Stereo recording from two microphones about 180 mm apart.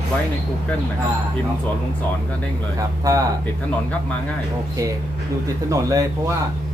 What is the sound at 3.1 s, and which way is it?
Speech, 20° right (ahead or behind).